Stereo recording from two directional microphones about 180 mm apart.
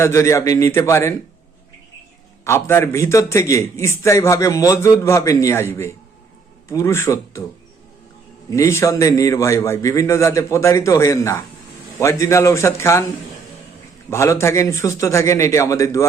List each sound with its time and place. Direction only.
0.0 s a man's voice: 15° left (ahead or behind)
2.4 s a man's voice: 15° left (ahead or behind)
8.4 s a man's voice: 15° left (ahead or behind)
14.1 s a man's voice: 15° left (ahead or behind)